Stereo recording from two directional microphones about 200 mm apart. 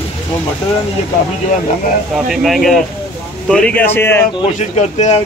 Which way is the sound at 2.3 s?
Centre (ahead or behind).